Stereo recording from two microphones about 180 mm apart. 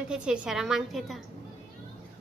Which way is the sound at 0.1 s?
5° right (ahead or behind).